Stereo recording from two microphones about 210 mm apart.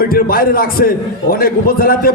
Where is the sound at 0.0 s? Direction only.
45° left (ahead or behind).